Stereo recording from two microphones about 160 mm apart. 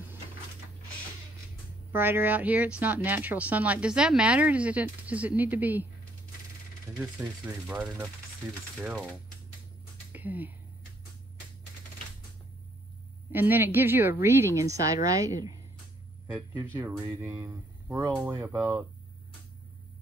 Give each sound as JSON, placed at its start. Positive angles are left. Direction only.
{"t": 1.9, "sound": "speech", "side_deg": -15}
{"t": 7.0, "sound": "speech", "side_deg": -10}
{"t": 10.1, "sound": "speech", "side_deg": -10}
{"t": 13.3, "sound": "speech", "side_deg": -10}
{"t": 16.3, "sound": "speech", "side_deg": -10}